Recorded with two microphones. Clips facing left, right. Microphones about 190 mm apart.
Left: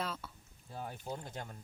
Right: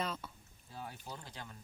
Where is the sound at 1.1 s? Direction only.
50° left (ahead or behind).